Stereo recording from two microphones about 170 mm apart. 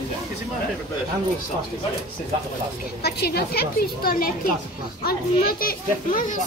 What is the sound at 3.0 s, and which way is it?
A woman's voice, 70° left (ahead or behind).